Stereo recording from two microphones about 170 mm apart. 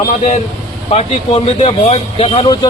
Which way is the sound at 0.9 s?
35° left (ahead or behind).